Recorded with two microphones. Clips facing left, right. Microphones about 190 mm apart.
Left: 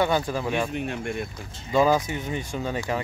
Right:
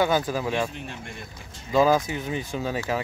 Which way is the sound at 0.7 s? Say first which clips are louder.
Left 9 dB; 60° left (ahead or behind).